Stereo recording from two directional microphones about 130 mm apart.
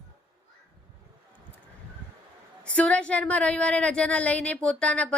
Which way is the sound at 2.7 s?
10° left (ahead or behind).